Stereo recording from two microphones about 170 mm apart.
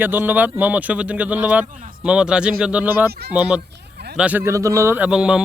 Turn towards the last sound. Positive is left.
turn(degrees=-5)  # may be behind; listen again after turning